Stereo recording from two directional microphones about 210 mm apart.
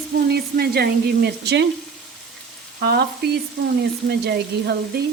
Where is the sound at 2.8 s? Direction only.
50° right (ahead or behind).